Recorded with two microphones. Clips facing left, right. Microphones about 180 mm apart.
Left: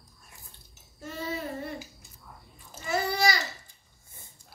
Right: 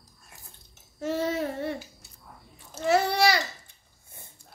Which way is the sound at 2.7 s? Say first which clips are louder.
Right 6 dB; 70° right (ahead or behind).